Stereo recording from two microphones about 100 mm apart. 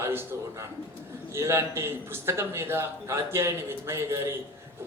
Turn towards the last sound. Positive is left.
turn(degrees=-25)  # may be behind; listen again after turning